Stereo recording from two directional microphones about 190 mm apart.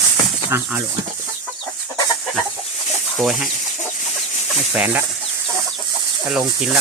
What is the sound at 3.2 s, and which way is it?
Speech, centre (ahead or behind).